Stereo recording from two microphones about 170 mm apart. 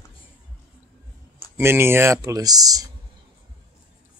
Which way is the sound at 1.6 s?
15° right (ahead or behind).